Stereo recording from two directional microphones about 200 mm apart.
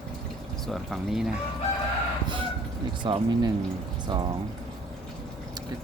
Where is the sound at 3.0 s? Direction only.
25° right (ahead or behind).